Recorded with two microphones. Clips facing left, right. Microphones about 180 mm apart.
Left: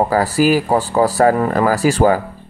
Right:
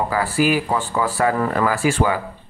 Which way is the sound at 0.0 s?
40° left (ahead or behind).